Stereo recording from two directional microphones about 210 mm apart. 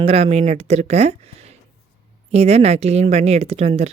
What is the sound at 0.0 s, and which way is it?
Speech, 30° right (ahead or behind).